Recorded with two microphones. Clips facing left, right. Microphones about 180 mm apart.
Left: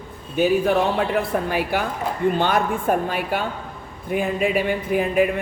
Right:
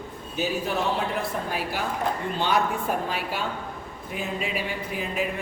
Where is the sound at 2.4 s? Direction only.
55° left (ahead or behind).